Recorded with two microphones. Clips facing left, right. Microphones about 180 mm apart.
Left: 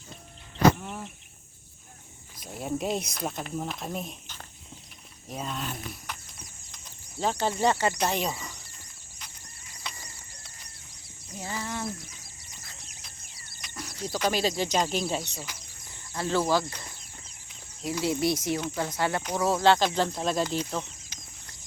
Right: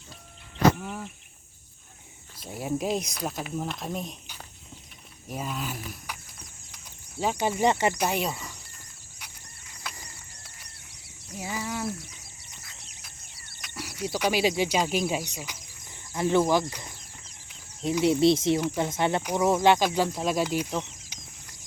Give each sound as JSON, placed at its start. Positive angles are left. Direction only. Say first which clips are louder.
{"t": 0.8, "sound": "speech", "louder": "right 2 dB", "side_deg": 0}
{"t": 2.5, "sound": "speech", "louder": "right 2 dB", "side_deg": -5}
{"t": 5.3, "sound": "speech", "louder": "right 1 dB", "side_deg": -5}
{"t": 9.8, "sound": "a sound", "louder": "right 1 dB", "side_deg": -5}
{"t": 11.3, "sound": "speech", "louder": "right 2 dB", "side_deg": -10}
{"t": 13.6, "sound": "a sound", "louder": "right 2 dB", "side_deg": -5}
{"t": 14.0, "sound": "speech", "louder": "right 2 dB", "side_deg": -10}
{"t": 18.6, "sound": "speech", "louder": "right 3 dB", "side_deg": -15}
{"t": 21.1, "sound": "bird flight", "louder": "right 1 dB", "side_deg": -15}